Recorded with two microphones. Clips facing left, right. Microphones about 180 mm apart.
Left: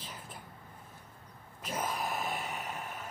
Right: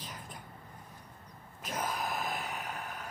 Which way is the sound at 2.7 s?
5° left (ahead or behind).